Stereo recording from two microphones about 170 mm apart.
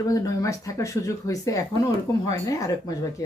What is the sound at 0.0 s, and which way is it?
Speech, 20° left (ahead or behind).